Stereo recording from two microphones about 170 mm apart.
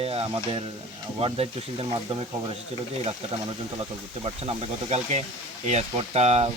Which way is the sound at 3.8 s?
30° right (ahead or behind).